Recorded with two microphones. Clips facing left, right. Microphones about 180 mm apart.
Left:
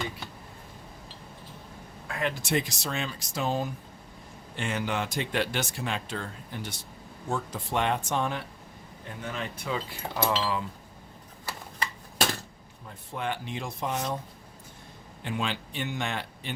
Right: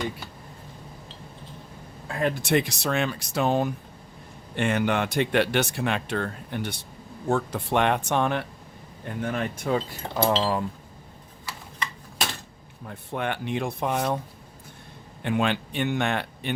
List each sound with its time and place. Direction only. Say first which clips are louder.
2.0 s a sound: right 5 dB; 35° right (ahead or behind)
2.4 s speech: right 5 dB; 65° right (ahead or behind)
9.2 s cutlery: right 7 dB; 55° right (ahead or behind)
13.1 s speech: right 4 dB; 60° right (ahead or behind)
15.2 s speech: right 7 dB; 60° right (ahead or behind)